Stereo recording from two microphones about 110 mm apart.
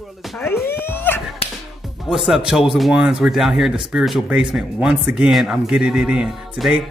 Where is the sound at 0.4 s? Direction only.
20° left (ahead or behind).